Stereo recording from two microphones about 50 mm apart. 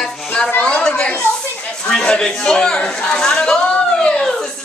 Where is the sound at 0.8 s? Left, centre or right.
Left.